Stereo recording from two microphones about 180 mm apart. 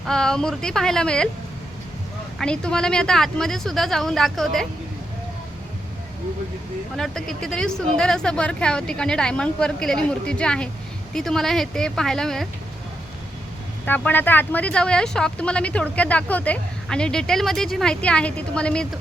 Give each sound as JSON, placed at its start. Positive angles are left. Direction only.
{"t": 0.0, "sound": "speech", "side_deg": 5}
{"t": 2.4, "sound": "speech", "side_deg": 5}
{"t": 6.9, "sound": "speech", "side_deg": 0}
{"t": 13.8, "sound": "speech", "side_deg": 10}